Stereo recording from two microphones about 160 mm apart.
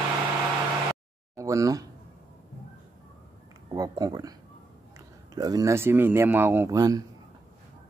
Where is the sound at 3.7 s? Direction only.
25° right (ahead or behind).